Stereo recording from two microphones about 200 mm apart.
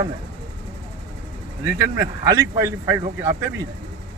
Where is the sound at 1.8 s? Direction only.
15° right (ahead or behind).